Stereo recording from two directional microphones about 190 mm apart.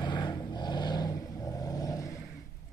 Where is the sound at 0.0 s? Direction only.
20° left (ahead or behind).